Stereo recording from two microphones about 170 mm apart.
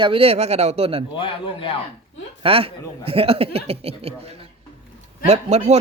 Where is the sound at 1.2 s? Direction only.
30° left (ahead or behind).